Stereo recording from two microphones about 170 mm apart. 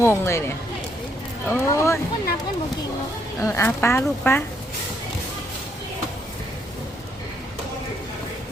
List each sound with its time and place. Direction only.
0.0 s speech: 15° left (ahead or behind)
3.4 s speech: 15° left (ahead or behind)